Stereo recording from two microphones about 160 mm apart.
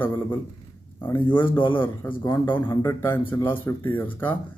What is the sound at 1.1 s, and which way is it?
A man's voice, 30° left (ahead or behind).